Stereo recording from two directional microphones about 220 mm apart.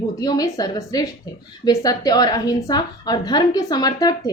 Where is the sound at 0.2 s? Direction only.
15° left (ahead or behind).